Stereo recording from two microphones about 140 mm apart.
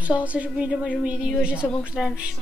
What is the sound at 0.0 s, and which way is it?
A woman's voice, 10° right (ahead or behind).